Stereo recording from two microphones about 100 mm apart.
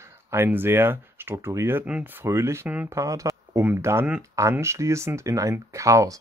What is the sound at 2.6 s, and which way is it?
Speech, 15° right (ahead or behind).